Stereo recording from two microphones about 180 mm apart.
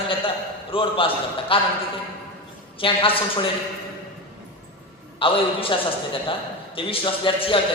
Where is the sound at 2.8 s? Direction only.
30° left (ahead or behind).